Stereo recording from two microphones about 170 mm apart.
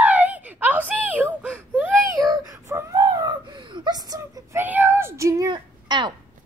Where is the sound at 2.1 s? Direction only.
20° right (ahead or behind).